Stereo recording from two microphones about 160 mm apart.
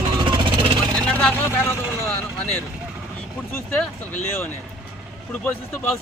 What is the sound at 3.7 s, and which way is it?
Speech, 5° left (ahead or behind).